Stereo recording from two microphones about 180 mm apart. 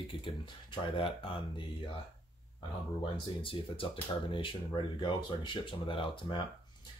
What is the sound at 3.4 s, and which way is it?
Speech, 30° left (ahead or behind).